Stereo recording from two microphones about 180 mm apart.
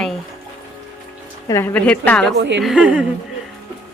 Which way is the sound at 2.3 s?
75° right (ahead or behind).